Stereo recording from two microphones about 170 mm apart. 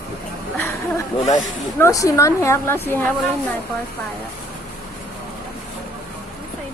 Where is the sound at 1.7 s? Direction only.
15° left (ahead or behind).